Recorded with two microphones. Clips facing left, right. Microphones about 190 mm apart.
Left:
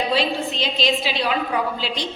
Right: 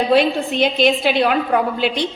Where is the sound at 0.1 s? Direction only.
55° right (ahead or behind).